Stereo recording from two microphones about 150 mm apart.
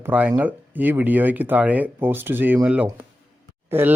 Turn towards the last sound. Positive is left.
turn(degrees=-15)  # may be behind; listen again after turning